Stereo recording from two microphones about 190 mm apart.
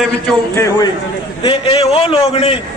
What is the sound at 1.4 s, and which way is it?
A man's voice, 30° left (ahead or behind).